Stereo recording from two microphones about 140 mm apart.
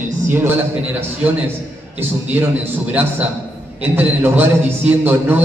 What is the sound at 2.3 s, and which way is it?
Speech, 15° right (ahead or behind).